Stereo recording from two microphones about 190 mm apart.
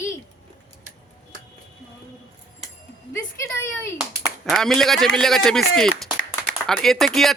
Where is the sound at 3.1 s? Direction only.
15° left (ahead or behind).